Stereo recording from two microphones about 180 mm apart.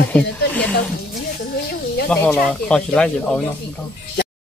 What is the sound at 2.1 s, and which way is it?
Speech, 5° left (ahead or behind).